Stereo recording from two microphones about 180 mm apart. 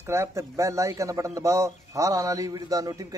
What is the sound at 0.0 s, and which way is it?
A man's voice, 15° right (ahead or behind).